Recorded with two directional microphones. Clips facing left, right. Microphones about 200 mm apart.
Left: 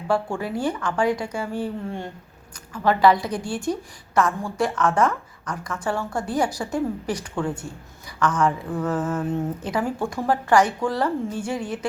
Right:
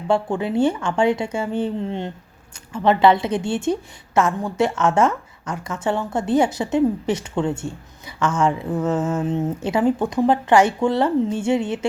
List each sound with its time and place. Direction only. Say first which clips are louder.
0.1 s a woman's voice: right 4 dB; 25° right (ahead or behind)